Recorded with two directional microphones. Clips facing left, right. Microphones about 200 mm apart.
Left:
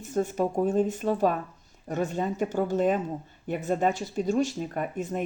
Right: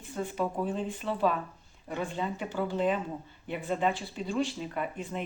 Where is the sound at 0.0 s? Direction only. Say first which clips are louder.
Left 6 dB; 45° left (ahead or behind).